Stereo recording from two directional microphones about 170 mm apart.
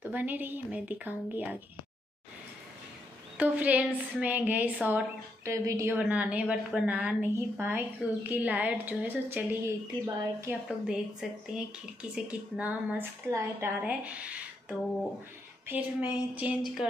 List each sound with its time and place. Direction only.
0.0 s speech: 10° right (ahead or behind)
3.3 s speech: 10° right (ahead or behind)
10.9 s speech: 5° right (ahead or behind)